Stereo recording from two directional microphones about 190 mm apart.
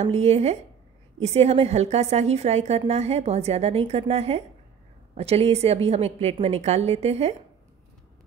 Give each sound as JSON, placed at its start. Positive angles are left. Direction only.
{"t": 0.0, "sound": "a woman's voice", "side_deg": -35}